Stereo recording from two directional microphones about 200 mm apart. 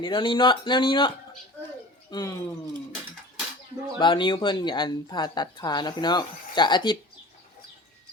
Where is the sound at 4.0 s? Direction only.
25° left (ahead or behind).